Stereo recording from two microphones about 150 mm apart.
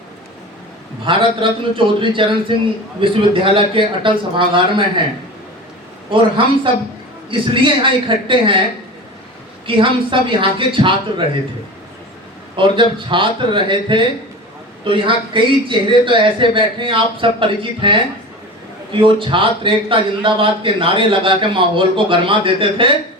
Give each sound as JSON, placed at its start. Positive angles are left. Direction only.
{"t": 1.0, "sound": "a man's voice", "side_deg": -35}
{"t": 6.1, "sound": "a man's voice", "side_deg": -35}
{"t": 9.6, "sound": "a man's voice", "side_deg": -35}
{"t": 12.5, "sound": "a man's voice", "side_deg": -35}